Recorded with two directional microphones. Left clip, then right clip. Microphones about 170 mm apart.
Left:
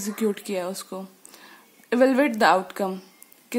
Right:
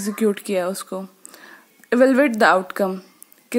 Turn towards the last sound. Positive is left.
turn(degrees=-25)  # may be behind; listen again after turning